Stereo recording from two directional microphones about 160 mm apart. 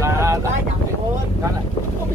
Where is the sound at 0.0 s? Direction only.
20° right (ahead or behind).